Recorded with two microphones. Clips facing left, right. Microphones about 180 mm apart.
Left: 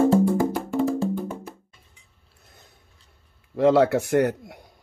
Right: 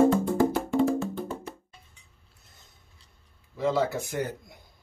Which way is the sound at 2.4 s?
60° left (ahead or behind).